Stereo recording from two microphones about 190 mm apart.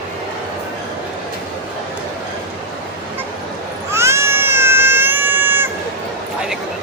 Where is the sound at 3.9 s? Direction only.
15° right (ahead or behind).